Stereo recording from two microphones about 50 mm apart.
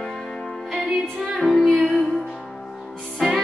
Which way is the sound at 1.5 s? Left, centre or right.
Centre.